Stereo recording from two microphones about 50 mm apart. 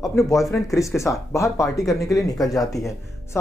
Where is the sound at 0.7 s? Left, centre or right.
Left.